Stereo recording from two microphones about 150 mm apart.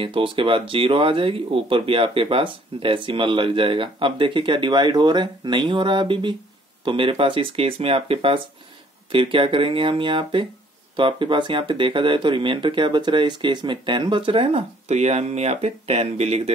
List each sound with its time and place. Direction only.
0.0 s speech: 35° right (ahead or behind)